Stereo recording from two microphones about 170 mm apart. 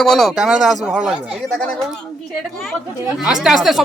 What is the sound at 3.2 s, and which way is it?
Speech, 5° right (ahead or behind).